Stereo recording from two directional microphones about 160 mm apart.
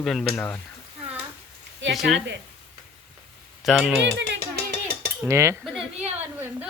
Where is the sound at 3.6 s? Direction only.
Centre (ahead or behind).